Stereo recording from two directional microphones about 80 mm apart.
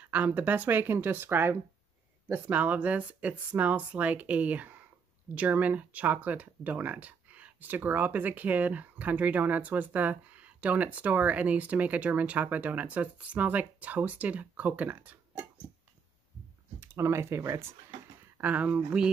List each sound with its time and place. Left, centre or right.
0.0 s speech: centre
16.8 s speech: right
18.4 s speech: centre